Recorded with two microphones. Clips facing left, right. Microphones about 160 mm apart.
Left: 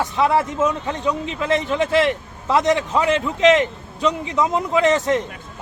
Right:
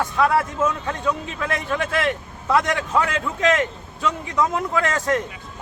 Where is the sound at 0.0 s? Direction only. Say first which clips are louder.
Left 1 dB; 20° left (ahead or behind).